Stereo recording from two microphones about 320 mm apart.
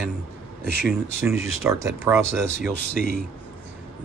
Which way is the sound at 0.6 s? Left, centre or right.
Right.